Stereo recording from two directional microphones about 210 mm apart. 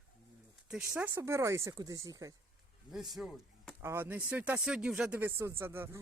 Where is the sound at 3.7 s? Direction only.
10° right (ahead or behind).